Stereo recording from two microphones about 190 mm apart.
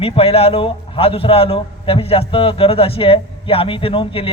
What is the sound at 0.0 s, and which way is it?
A man's voice, 30° left (ahead or behind).